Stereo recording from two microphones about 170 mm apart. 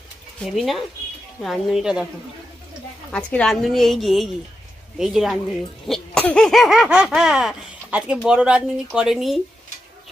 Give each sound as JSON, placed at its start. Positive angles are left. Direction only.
{"t": 0.4, "sound": "laughter", "side_deg": 0}
{"t": 3.1, "sound": "laughter", "side_deg": 5}